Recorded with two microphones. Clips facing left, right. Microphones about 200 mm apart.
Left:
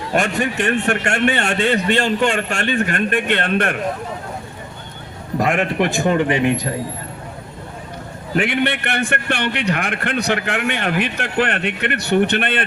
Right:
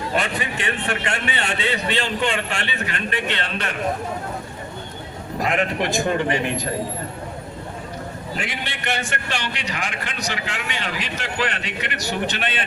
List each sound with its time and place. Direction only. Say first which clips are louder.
0.1 s a man's voice: left 7 dB; 45° left (ahead or behind)
5.4 s a man's voice: left 4 dB; 50° left (ahead or behind)
8.4 s a man's voice: left 16 dB; 60° left (ahead or behind)